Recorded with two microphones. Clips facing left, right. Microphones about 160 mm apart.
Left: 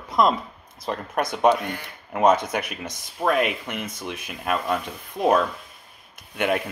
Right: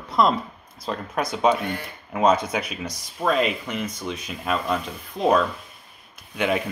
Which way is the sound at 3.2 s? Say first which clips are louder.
Even; 15° left (ahead or behind).